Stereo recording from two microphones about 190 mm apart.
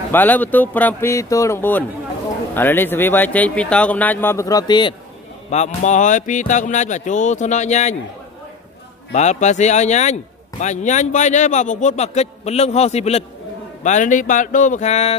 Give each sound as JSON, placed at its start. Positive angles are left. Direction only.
{"t": 0.1, "sound": "speech", "side_deg": 10}
{"t": 5.5, "sound": "speech", "side_deg": 35}
{"t": 9.1, "sound": "speech", "side_deg": 35}